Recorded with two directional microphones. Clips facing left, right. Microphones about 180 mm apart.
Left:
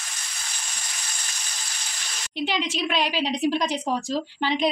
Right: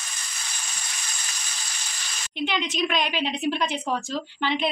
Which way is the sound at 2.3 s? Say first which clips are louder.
Even; 35° left (ahead or behind).